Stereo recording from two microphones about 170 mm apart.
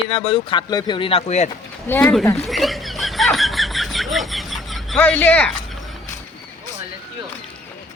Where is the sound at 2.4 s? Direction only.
Centre (ahead or behind).